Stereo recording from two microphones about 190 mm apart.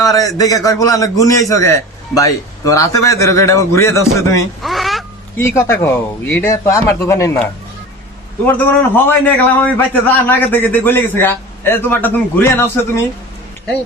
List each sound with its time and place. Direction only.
0.0 s a man's voice: 20° left (ahead or behind)
4.6 s a sound: centre (ahead or behind)
5.4 s a man's voice: 15° left (ahead or behind)
8.4 s a man's voice: 10° left (ahead or behind)